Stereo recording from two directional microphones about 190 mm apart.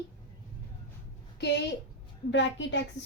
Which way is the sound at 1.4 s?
65° left (ahead or behind).